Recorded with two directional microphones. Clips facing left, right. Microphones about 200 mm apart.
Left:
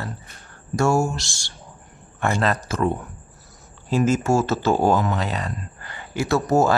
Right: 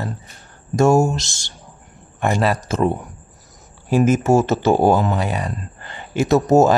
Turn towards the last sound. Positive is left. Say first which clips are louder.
# right 5 dB
turn(degrees=-20)  # may be behind; listen again after turning